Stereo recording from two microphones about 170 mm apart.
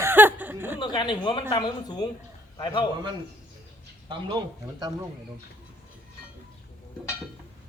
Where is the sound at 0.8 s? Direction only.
25° left (ahead or behind).